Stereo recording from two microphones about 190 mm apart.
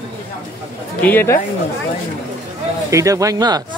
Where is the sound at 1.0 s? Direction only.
10° left (ahead or behind).